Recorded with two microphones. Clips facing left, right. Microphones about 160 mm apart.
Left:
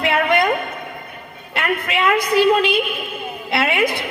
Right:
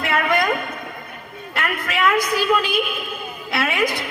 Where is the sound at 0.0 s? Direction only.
30° left (ahead or behind).